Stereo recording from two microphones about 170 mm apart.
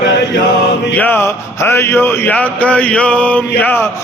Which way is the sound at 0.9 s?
10° left (ahead or behind).